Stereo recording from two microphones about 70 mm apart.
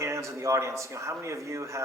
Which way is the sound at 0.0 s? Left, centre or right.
Right.